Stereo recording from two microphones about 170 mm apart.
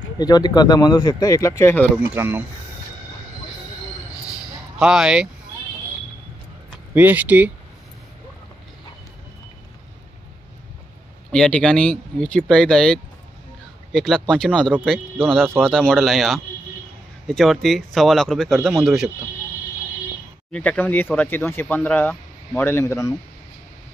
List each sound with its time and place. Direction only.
0.2 s speech: 25° left (ahead or behind)
2.1 s speech: 15° right (ahead or behind)
4.7 s speech: 5° right (ahead or behind)
6.9 s speech: 10° right (ahead or behind)
11.3 s speech: 5° left (ahead or behind)
20.5 s speech: 10° left (ahead or behind)